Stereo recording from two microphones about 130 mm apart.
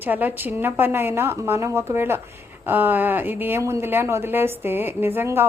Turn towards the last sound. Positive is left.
turn(degrees=-15)  # may be behind; listen again after turning